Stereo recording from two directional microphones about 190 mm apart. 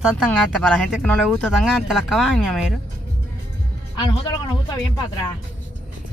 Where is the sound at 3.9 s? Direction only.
25° left (ahead or behind).